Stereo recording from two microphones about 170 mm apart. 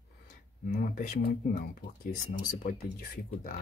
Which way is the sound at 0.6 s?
50° left (ahead or behind).